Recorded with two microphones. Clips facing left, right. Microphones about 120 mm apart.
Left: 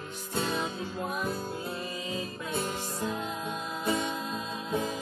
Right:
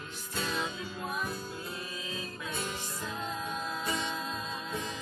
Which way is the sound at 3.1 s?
5° left (ahead or behind).